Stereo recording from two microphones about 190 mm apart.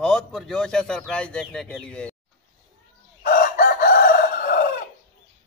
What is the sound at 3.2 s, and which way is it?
Chicken, 50° left (ahead or behind).